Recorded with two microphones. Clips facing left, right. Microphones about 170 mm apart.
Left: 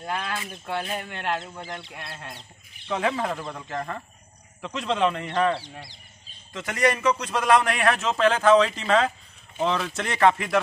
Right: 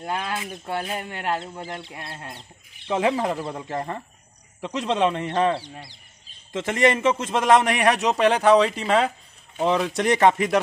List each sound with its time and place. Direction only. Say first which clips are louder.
0.0 s a man's voice: right 2 dB; 20° right (ahead or behind)
1.3 s a man's voice: right 2 dB; 30° right (ahead or behind)
3.3 s a man's voice: right 3 dB; 30° right (ahead or behind)